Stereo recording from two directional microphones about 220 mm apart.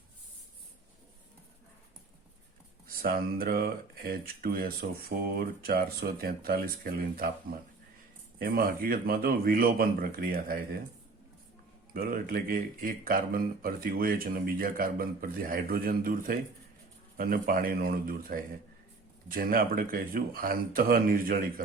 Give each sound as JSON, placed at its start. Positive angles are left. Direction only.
{"t": 3.0, "sound": "speech", "side_deg": -45}
{"t": 8.4, "sound": "speech", "side_deg": -40}
{"t": 11.9, "sound": "speech", "side_deg": -40}